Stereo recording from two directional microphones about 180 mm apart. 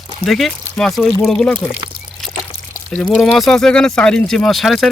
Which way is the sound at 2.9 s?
5° left (ahead or behind).